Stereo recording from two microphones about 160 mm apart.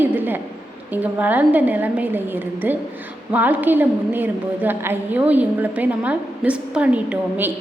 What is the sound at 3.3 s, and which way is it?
A woman's voice, 10° right (ahead or behind).